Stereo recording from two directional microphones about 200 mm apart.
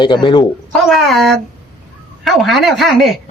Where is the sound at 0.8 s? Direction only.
Centre (ahead or behind).